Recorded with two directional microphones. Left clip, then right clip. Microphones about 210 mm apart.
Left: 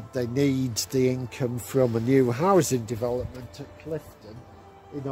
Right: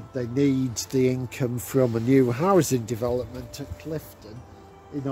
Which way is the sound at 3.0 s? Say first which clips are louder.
Right 2 dB; 20° right (ahead or behind).